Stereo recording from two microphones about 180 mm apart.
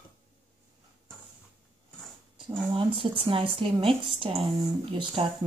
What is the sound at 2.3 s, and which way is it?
A woman's voice, 30° right (ahead or behind).